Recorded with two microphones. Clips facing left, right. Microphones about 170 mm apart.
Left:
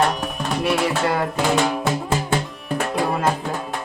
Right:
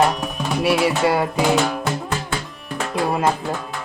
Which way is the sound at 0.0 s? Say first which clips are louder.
Right 2 dB; centre (ahead or behind).